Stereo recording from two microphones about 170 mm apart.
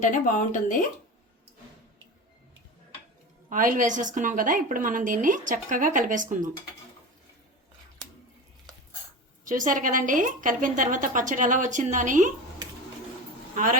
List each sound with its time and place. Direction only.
0.0 s speech: 45° left (ahead or behind)
3.5 s a woman's voice: 50° right (ahead or behind)
9.5 s a woman's voice: 50° right (ahead or behind)